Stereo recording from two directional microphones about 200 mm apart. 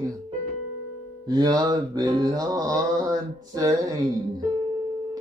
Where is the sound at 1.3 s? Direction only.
20° right (ahead or behind).